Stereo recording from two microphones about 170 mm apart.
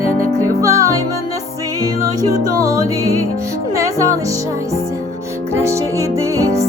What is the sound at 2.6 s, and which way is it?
Music, 20° right (ahead or behind).